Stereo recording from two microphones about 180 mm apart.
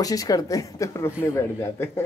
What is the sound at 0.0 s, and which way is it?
Speech, 20° left (ahead or behind).